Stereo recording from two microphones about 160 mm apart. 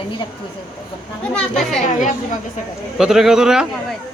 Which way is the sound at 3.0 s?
5° right (ahead or behind).